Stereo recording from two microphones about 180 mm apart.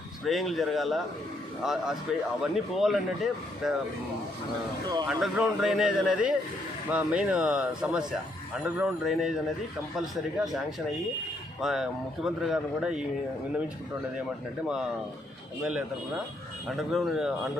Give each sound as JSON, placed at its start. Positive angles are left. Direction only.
{"t": 0.3, "sound": "speech", "side_deg": 0}
{"t": 5.0, "sound": "speech", "side_deg": 0}
{"t": 11.6, "sound": "speech", "side_deg": 0}
{"t": 15.6, "sound": "speech", "side_deg": -5}